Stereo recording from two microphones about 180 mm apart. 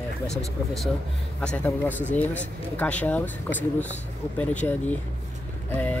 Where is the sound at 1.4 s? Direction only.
10° left (ahead or behind).